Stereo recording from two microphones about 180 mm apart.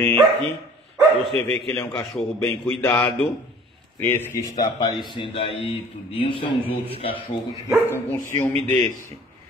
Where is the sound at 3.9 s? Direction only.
10° left (ahead or behind); by 7.4 s 30° left (ahead or behind).